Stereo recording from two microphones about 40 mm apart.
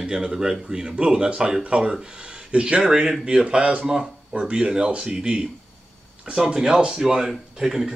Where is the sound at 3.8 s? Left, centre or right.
Centre.